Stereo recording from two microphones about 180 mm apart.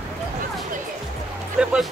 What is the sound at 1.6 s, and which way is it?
Music, 5° right (ahead or behind).